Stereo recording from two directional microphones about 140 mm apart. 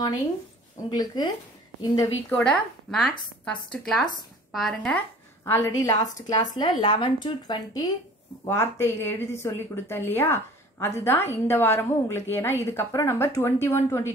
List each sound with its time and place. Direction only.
0.8 s speech: 30° left (ahead or behind)
2.4 s speech: 5° left (ahead or behind)
5.4 s a woman's voice: 20° left (ahead or behind)
8.5 s a woman's voice: 20° left (ahead or behind)